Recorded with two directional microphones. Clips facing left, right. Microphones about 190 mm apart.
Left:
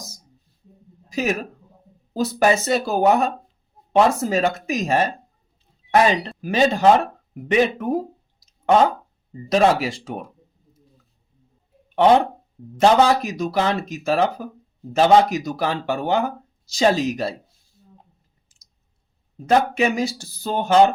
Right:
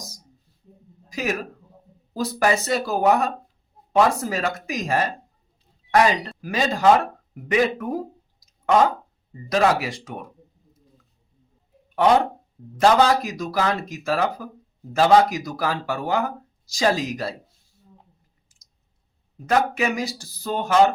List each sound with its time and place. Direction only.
1.1 s speech: 25° left (ahead or behind)
12.8 s speech: 25° left (ahead or behind)
19.5 s speech: 25° left (ahead or behind)